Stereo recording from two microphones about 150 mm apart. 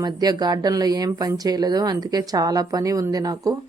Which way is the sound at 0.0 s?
25° right (ahead or behind).